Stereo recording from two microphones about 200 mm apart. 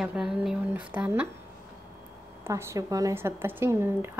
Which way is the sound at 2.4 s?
15° right (ahead or behind).